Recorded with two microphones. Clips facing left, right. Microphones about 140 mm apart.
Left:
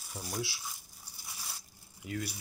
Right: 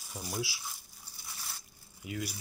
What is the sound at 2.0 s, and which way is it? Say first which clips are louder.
Speech: even; 5° right (ahead or behind).